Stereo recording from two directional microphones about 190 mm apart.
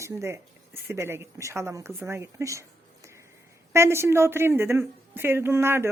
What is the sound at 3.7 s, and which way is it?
Speech, 15° right (ahead or behind).